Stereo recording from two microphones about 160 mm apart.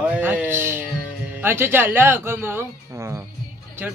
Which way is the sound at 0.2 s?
10° right (ahead or behind).